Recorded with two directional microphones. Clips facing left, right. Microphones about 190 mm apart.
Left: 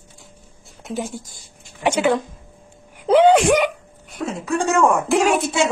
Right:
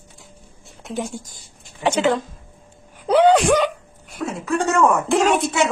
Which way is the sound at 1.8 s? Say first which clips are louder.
Left 1 dB; 10° left (ahead or behind).